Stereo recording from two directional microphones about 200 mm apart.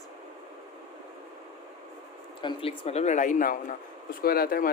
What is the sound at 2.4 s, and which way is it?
Speech, 25° left (ahead or behind).